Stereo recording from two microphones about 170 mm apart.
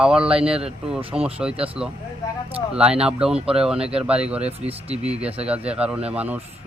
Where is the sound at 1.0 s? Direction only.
30° right (ahead or behind).